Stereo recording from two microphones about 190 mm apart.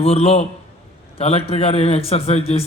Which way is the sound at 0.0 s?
30° left (ahead or behind).